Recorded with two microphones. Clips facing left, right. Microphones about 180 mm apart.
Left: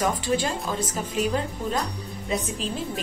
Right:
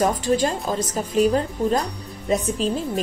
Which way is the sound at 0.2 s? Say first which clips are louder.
Right 5 dB; 45° right (ahead or behind).